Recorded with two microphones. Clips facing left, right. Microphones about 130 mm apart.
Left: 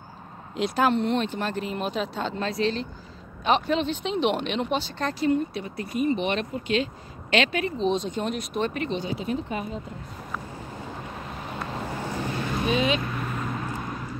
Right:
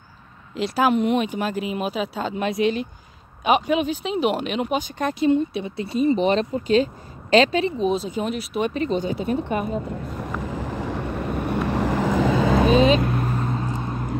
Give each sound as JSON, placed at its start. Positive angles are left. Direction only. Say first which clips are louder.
{"t": 0.6, "sound": "speech", "louder": "right 3 dB", "side_deg": -5}
{"t": 7.8, "sound": "speech", "louder": "right 3 dB", "side_deg": -5}
{"t": 8.7, "sound": "speech", "louder": "right 5 dB", "side_deg": -40}
{"t": 9.4, "sound": "speech", "louder": "right 6 dB", "side_deg": -60}
{"t": 10.4, "sound": "vehicle", "louder": "right 9 dB", "side_deg": -90}
{"t": 12.7, "sound": "speech", "louder": "right 7 dB", "side_deg": -35}
{"t": 13.0, "sound": "vehicle", "louder": "right 6 dB", "side_deg": -40}